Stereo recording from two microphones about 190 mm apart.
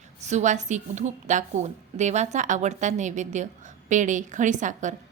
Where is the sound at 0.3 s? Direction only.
40° right (ahead or behind).